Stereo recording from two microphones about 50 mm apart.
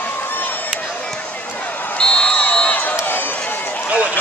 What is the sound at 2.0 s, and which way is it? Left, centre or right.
Basketball bounce, centre.